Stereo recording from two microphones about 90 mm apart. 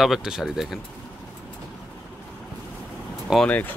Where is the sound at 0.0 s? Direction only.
5° right (ahead or behind).